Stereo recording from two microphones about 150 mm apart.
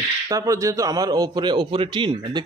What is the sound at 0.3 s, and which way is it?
A man's voice, 20° right (ahead or behind).